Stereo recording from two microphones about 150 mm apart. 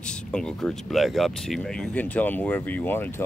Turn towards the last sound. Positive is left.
turn(degrees=15)  # may be behind; listen again after turning